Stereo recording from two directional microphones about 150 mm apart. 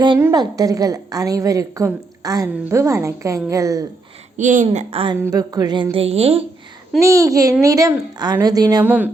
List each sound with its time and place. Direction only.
0.2 s a woman's voice: 25° right (ahead or behind)
4.4 s speech: 55° right (ahead or behind); by 5.1 s 40° right (ahead or behind)
5.2 s a woman's voice: 25° right (ahead or behind)
5.9 s a woman's voice: 40° right (ahead or behind)
7.0 s a woman's voice: 20° right (ahead or behind)
8.8 s a woman's voice: 15° right (ahead or behind)